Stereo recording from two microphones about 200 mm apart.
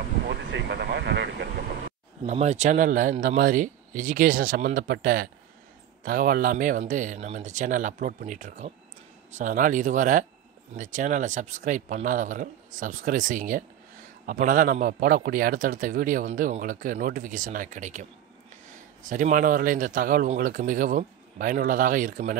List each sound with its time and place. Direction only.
0.3 s vehicle: 55° right (ahead or behind)
2.2 s a man's voice: 35° right (ahead or behind)
19.0 s a man's voice: 40° right (ahead or behind)